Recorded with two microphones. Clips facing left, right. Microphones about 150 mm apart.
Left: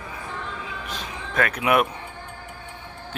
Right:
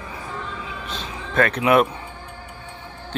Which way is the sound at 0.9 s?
10° left (ahead or behind).